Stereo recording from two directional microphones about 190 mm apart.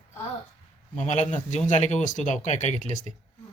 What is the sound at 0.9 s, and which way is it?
Speech, 40° left (ahead or behind).